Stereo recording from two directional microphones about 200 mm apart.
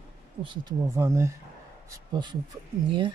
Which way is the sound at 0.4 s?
20° right (ahead or behind).